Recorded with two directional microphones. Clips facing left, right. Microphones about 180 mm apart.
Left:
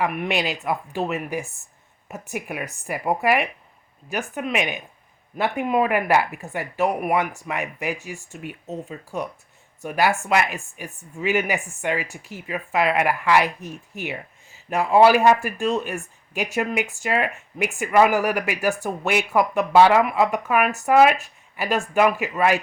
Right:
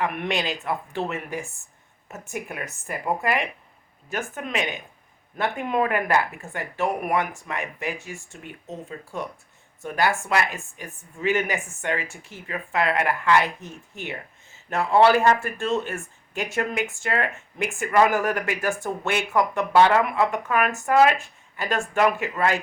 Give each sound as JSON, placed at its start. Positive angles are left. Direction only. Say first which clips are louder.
{"t": 0.0, "sound": "speech", "louder": "left 2 dB", "side_deg": 10}
{"t": 9.8, "sound": "speech", "louder": "left 2 dB", "side_deg": 15}
{"t": 14.7, "sound": "speech", "louder": "left 2 dB", "side_deg": 15}